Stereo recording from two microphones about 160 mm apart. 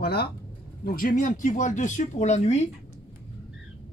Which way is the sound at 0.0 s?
80° left.